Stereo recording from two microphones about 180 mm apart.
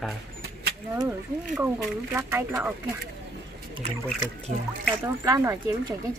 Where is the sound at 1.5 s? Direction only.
Centre (ahead or behind).